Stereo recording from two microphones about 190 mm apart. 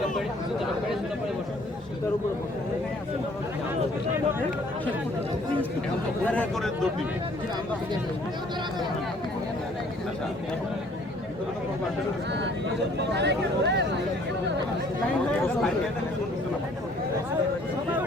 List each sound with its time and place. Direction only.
6.2 s speech: 5° left (ahead or behind)
13.0 s speech: 65° right (ahead or behind)